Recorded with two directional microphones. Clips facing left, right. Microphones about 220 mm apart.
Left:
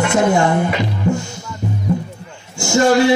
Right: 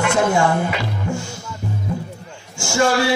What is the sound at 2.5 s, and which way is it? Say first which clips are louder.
Speech: left 5 dB; 20° left (ahead or behind).